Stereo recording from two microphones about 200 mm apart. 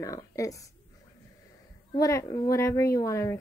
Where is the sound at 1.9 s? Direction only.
15° left (ahead or behind).